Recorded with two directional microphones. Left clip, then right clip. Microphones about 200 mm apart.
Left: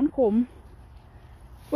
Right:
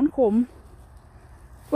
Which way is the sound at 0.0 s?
15° right (ahead or behind).